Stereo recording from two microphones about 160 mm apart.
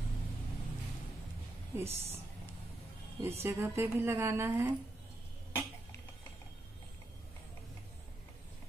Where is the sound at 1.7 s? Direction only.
15° right (ahead or behind).